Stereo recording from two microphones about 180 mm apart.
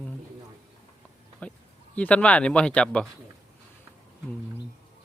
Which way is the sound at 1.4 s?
5° left (ahead or behind).